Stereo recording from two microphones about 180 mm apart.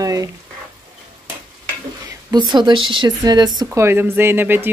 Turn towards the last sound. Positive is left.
turn(degrees=-10)  # may be behind; listen again after turning